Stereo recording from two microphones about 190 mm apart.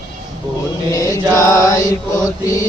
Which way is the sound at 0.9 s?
15° left (ahead or behind).